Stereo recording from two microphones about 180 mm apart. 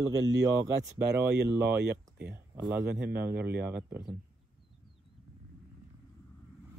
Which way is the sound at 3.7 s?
10° right (ahead or behind).